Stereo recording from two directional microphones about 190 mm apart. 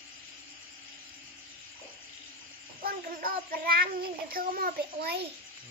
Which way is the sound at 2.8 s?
50° right (ahead or behind).